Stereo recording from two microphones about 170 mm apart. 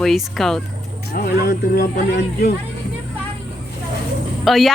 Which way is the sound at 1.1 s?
65° left (ahead or behind).